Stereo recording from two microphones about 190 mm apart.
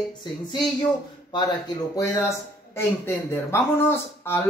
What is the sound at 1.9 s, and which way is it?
Speech, 15° left (ahead or behind).